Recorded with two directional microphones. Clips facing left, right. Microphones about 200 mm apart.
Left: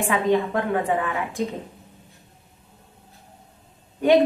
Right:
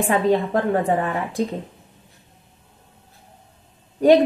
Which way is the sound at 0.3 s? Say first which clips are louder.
Right 2 dB; 40° right (ahead or behind).